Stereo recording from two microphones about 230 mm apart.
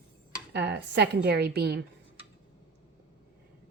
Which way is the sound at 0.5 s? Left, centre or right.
Right.